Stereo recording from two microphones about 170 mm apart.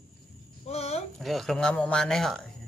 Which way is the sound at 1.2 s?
Centre (ahead or behind).